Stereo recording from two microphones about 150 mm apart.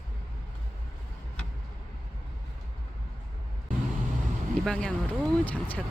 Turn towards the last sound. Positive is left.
turn(degrees=10)  # may be behind; listen again after turning